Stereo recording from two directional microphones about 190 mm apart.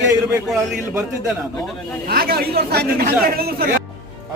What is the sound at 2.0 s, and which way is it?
Speech, 55° right (ahead or behind).